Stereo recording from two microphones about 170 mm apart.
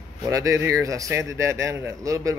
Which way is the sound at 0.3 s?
20° right (ahead or behind).